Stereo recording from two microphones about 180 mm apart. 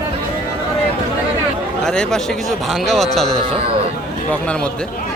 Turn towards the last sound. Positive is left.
turn(degrees=0)  # may be behind; listen again after turning